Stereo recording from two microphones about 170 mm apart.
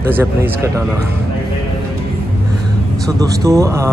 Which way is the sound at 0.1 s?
15° right (ahead or behind).